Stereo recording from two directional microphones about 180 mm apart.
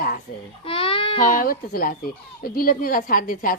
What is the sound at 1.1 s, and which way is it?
A woman's voice, 50° left (ahead or behind).